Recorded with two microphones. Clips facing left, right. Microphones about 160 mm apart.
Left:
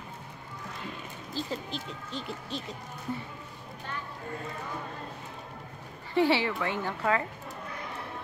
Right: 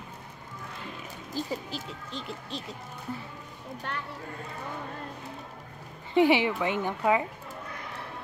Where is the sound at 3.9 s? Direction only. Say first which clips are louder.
Right 3 dB; 65° right (ahead or behind).